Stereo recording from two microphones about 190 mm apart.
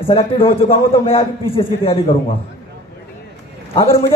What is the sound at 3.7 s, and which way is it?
Speech, 30° left (ahead or behind).